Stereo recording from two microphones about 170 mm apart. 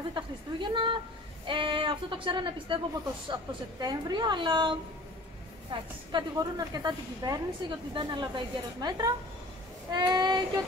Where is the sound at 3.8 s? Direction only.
25° right (ahead or behind).